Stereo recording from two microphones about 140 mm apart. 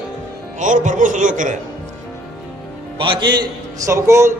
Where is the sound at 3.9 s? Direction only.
20° right (ahead or behind).